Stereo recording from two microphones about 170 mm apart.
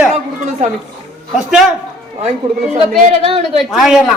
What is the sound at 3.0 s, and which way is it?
Speech, 35° right (ahead or behind).